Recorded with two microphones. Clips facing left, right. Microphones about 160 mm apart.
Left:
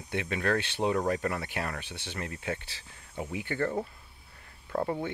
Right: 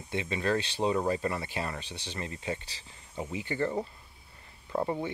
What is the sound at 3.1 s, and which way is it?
Speech, centre (ahead or behind).